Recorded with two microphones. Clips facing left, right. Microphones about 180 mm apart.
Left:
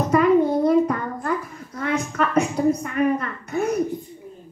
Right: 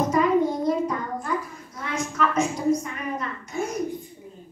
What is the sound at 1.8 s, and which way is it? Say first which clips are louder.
A woman's voice: left 3 dB; 60° left (ahead or behind).